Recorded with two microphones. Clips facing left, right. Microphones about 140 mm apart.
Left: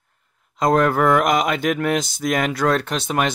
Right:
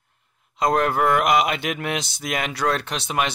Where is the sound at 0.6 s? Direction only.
45° left (ahead or behind).